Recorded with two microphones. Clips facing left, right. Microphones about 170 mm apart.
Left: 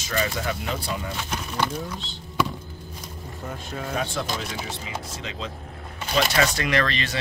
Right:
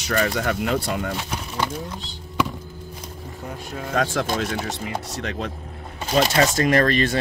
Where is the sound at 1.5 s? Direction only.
10° right (ahead or behind).